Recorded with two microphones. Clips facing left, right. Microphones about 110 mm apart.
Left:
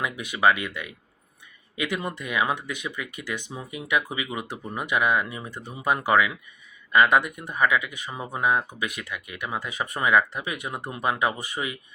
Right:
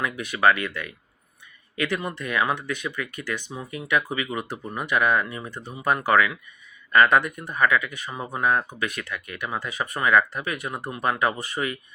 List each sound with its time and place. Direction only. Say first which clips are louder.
0.0 s speech: right 1 dB; 15° left (ahead or behind)